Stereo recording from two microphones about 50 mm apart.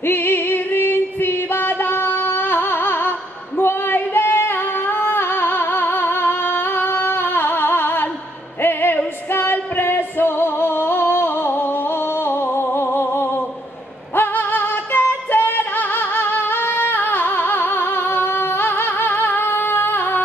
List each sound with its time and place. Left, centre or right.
0.0 s music: left
3.5 s female singing: left
8.6 s music: left
12.3 s a sound: left
14.1 s music: left